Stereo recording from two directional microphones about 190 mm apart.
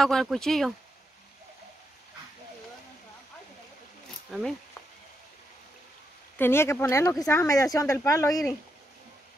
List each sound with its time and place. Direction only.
0.0 s speech: centre (ahead or behind)
4.3 s speech: centre (ahead or behind)
6.3 s speech: 10° left (ahead or behind)